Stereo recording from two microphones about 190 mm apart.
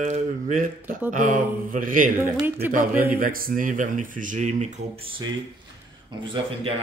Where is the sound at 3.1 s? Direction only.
50° right (ahead or behind).